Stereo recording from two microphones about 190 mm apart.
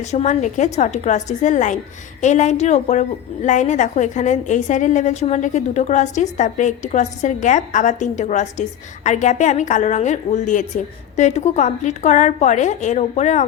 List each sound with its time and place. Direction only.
0.0 s a woman's voice: 35° left (ahead or behind)